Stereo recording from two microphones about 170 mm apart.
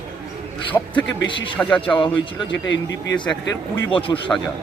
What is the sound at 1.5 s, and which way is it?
Speech, 10° left (ahead or behind).